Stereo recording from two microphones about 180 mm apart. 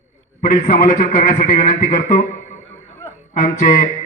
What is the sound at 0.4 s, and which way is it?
A man's voice, 50° left (ahead or behind).